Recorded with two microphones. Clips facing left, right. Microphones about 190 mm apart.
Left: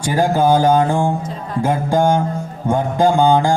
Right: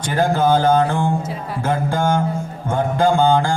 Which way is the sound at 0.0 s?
15° left (ahead or behind).